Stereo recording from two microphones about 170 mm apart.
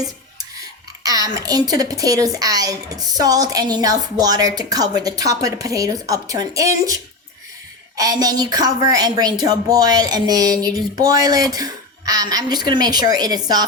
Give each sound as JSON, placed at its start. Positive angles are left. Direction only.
{"t": 1.0, "sound": "a woman's voice", "side_deg": -20}